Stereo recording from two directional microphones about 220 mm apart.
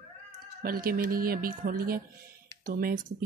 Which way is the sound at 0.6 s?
40° right (ahead or behind).